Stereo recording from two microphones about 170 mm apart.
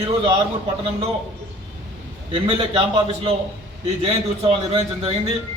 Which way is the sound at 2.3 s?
30° right (ahead or behind).